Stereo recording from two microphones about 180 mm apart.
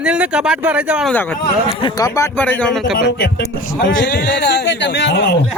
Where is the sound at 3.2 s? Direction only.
65° left (ahead or behind).